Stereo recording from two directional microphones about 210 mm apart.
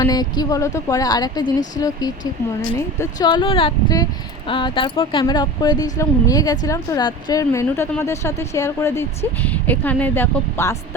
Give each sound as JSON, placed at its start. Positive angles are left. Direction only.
{"t": 0.0, "sound": "speech", "side_deg": 20}